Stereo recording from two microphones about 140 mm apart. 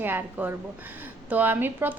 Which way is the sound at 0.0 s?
15° right (ahead or behind).